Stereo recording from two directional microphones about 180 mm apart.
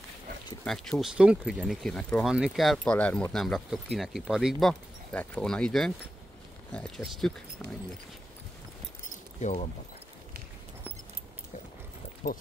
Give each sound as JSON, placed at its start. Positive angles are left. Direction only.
{"t": 0.7, "sound": "speech", "side_deg": 0}
{"t": 9.4, "sound": "speech", "side_deg": 40}